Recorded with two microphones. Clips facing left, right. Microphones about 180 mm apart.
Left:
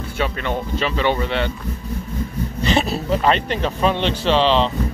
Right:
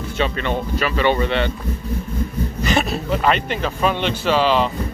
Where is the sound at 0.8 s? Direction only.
10° right (ahead or behind).